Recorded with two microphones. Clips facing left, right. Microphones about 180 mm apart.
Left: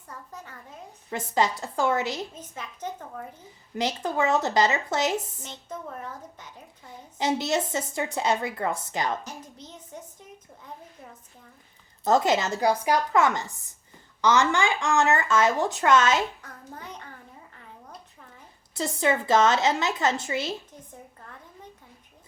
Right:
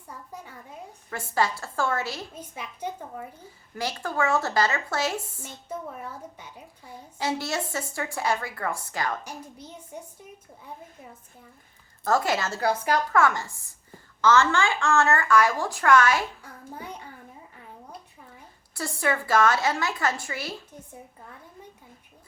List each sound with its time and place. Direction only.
0.1 s a sound: 10° right (ahead or behind)
1.1 s a woman's voice: 20° left (ahead or behind)
2.3 s a child's voice: 10° right (ahead or behind)
3.8 s a woman's voice: 20° left (ahead or behind)
5.5 s a child's voice: 10° right (ahead or behind)
7.2 s a woman's voice: 20° left (ahead or behind)
9.2 s a woman's voice: 10° right (ahead or behind)
12.0 s a woman's voice: 20° left (ahead or behind)
16.4 s a child's voice: 10° right (ahead or behind)
18.7 s a woman's voice: 20° left (ahead or behind)